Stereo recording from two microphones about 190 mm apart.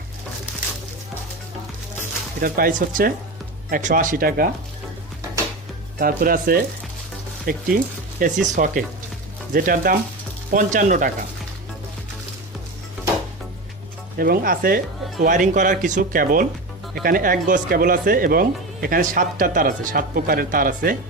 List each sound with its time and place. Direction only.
2.0 s speech: 45° right (ahead or behind)
6.0 s speech: 50° right (ahead or behind)
14.2 s speech: 50° right (ahead or behind)